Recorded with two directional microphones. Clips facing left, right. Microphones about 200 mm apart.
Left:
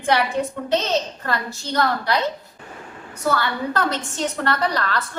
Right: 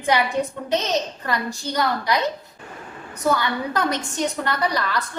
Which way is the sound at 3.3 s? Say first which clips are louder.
Even; 15° right (ahead or behind).